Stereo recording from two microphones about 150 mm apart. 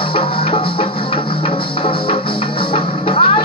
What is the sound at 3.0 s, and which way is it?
Music, 35° left (ahead or behind).